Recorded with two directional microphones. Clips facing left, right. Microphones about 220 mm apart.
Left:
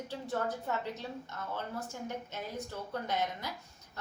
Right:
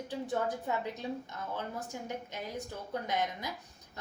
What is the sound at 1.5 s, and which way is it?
Speech, 15° right (ahead or behind).